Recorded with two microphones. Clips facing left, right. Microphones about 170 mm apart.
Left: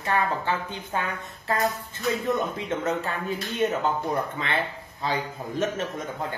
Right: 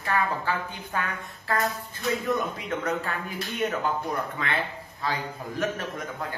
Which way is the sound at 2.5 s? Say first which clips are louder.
Left 2 dB; 25° left (ahead or behind).